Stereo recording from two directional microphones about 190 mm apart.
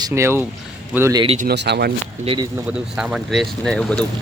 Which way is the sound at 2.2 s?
25° right (ahead or behind).